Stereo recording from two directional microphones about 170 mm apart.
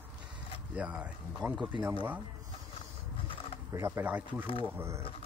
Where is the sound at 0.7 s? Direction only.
5° right (ahead or behind).